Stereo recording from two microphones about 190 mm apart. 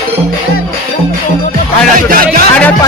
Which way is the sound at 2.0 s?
50° right (ahead or behind).